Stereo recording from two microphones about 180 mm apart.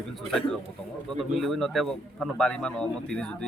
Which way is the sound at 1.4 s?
Centre (ahead or behind).